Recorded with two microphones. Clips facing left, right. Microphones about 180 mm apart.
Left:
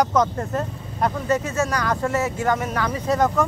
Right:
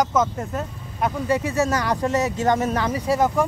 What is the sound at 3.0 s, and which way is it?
Speech, 10° right (ahead or behind).